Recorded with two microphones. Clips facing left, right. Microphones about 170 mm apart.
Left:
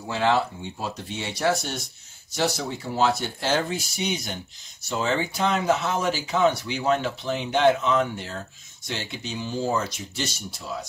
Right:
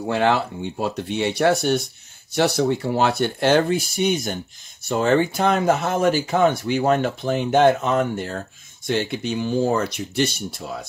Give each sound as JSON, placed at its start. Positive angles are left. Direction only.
{"t": 0.0, "sound": "speech", "side_deg": -60}